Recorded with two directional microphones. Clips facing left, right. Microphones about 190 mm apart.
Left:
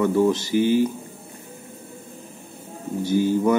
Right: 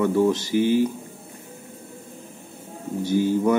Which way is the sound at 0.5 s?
45° left (ahead or behind).